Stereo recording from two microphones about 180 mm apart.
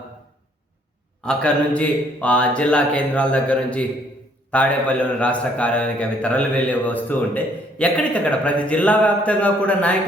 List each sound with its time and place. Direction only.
1.2 s a man's voice: 5° left (ahead or behind)